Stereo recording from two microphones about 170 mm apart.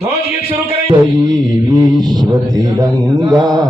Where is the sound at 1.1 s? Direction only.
20° right (ahead or behind).